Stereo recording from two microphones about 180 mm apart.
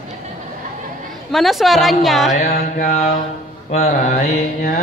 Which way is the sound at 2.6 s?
40° left (ahead or behind).